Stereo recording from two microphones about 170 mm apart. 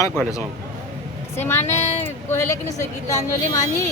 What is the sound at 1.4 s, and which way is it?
A woman's voice, 15° left (ahead or behind).